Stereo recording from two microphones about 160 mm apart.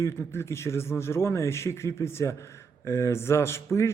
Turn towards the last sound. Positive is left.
turn(degrees=15)  # may be behind; listen again after turning